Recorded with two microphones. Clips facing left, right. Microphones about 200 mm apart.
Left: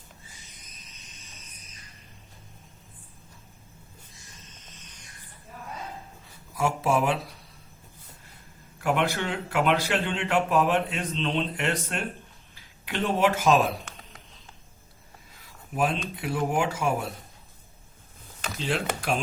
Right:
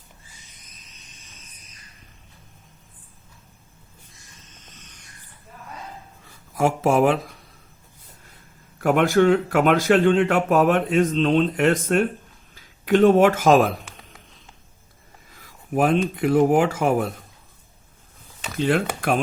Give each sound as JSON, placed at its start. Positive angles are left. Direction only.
{"t": 6.5, "sound": "speech", "side_deg": -50}
{"t": 8.8, "sound": "speech", "side_deg": -45}
{"t": 13.1, "sound": "speech", "side_deg": -45}
{"t": 15.7, "sound": "speech", "side_deg": -50}
{"t": 18.5, "sound": "speech", "side_deg": -55}